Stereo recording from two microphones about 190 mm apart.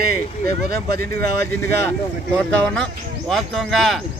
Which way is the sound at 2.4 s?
5° left (ahead or behind).